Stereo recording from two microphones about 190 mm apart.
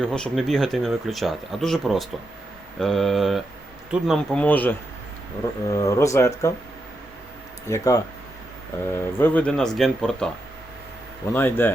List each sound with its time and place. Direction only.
0.0 s speech: 5° left (ahead or behind)
7.7 s speech: 20° left (ahead or behind); by 10.3 s 5° left (ahead or behind)
11.3 s speech: 10° left (ahead or behind)